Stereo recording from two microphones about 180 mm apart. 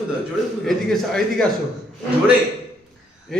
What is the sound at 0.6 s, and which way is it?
Speech, centre (ahead or behind).